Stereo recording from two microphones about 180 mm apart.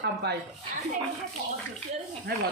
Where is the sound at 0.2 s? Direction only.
65° right (ahead or behind).